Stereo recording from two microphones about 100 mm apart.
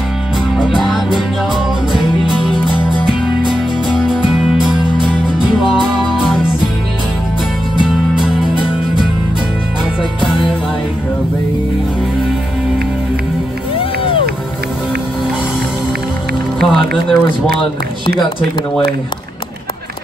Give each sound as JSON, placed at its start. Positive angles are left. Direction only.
{"t": 0.6, "sound": "music", "side_deg": 0}
{"t": 3.1, "sound": "music", "side_deg": -5}
{"t": 13.7, "sound": "music", "side_deg": 65}
{"t": 16.6, "sound": "music", "side_deg": -5}